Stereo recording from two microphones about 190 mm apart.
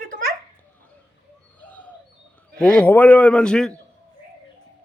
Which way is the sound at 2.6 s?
10° left (ahead or behind).